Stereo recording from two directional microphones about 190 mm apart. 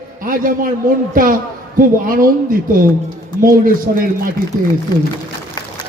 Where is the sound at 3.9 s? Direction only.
55° right (ahead or behind).